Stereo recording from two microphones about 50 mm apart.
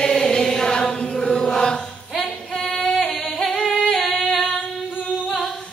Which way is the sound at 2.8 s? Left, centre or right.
Centre.